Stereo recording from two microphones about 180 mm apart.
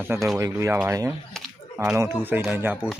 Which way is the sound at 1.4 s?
Centre (ahead or behind).